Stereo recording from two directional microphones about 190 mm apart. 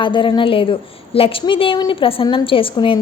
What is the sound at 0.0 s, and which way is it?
A woman's voice, 25° left (ahead or behind).